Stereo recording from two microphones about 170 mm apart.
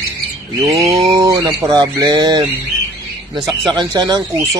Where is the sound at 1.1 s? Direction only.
20° right (ahead or behind).